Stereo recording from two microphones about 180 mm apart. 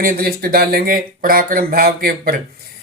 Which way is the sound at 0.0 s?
55° right (ahead or behind).